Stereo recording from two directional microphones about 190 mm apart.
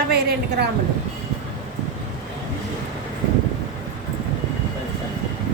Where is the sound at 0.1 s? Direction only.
60° right (ahead or behind).